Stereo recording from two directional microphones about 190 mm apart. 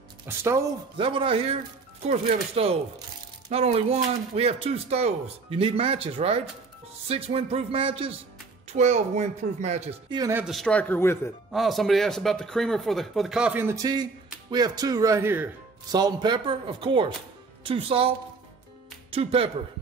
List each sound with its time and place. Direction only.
0.3 s speech: 15° right (ahead or behind)
0.9 s speech: 25° right (ahead or behind)
10.1 s speech: 20° right (ahead or behind)
10.4 s speech: centre (ahead or behind)
11.5 s speech: centre (ahead or behind)
15.9 s speech: 20° right (ahead or behind)